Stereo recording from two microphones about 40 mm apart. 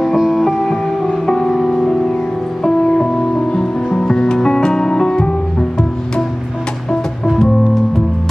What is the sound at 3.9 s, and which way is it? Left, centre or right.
Music, centre.